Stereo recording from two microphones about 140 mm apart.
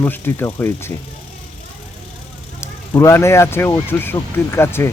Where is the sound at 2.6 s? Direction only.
20° left (ahead or behind).